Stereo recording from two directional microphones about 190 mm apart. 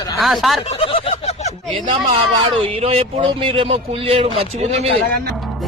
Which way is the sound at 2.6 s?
30° right (ahead or behind).